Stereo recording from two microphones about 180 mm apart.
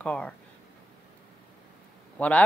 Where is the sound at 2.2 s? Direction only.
5° left (ahead or behind).